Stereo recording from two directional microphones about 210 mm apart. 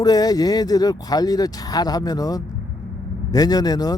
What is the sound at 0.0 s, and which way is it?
Speech, 20° left (ahead or behind).